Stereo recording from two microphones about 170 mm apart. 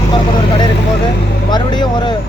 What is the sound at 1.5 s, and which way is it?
Speech, 25° left (ahead or behind).